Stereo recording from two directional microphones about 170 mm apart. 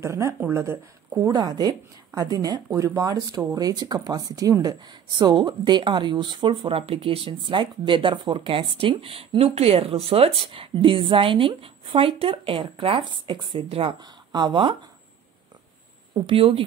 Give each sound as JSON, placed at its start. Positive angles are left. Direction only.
{"t": 0.0, "sound": "speech", "side_deg": -15}
{"t": 16.3, "sound": "speech", "side_deg": -30}